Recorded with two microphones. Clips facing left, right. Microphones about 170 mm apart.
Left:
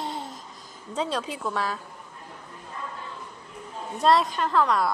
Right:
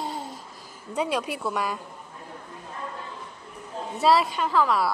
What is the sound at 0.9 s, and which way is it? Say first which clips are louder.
Speech: right 2 dB; 10° right (ahead or behind).